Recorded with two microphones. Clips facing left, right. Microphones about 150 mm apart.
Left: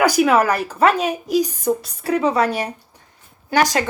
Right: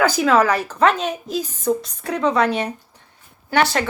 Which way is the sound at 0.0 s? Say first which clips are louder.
Left 1 dB; 10° left (ahead or behind).